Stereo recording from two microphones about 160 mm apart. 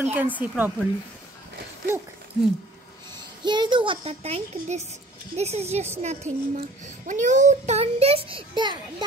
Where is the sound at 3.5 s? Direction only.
30° right (ahead or behind).